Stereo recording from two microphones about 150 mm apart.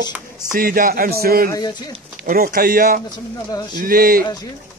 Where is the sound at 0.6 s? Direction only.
75° right (ahead or behind).